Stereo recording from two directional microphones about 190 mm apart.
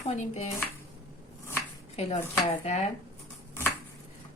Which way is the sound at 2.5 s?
35° left (ahead or behind).